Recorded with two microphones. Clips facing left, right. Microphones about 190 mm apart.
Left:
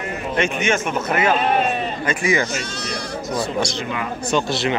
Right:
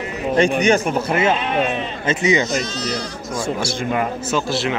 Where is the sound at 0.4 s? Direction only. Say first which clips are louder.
Right 5 dB; 35° right (ahead or behind).